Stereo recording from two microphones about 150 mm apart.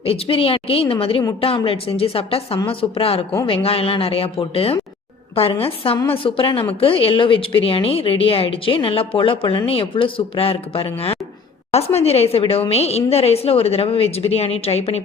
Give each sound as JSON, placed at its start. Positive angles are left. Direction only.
{"t": 0.0, "sound": "a woman's voice", "side_deg": 40}